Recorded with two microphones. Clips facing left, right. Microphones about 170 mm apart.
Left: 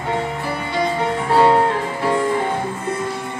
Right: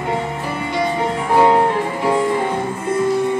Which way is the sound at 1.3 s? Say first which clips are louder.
Right 1 dB; 15° right (ahead or behind).